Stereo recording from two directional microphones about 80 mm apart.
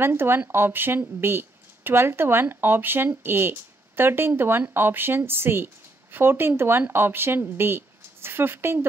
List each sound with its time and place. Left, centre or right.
0.0 s speech: right